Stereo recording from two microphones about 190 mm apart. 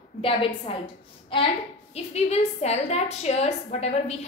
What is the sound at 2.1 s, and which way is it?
A woman's voice, 35° left (ahead or behind).